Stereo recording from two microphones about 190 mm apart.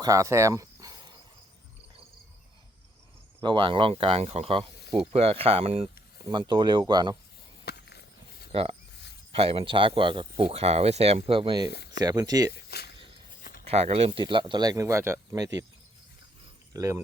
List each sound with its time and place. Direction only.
0.0 s cricket: 15° right (ahead or behind)
3.4 s speech: 25° right (ahead or behind)
7.6 s a sound: 60° left (ahead or behind)
9.3 s speech: 30° right (ahead or behind)
13.4 s a sound: 50° left (ahead or behind)
13.7 s speech: 35° right (ahead or behind); by 15.6 s 15° right (ahead or behind)
16.7 s speech: 15° right (ahead or behind)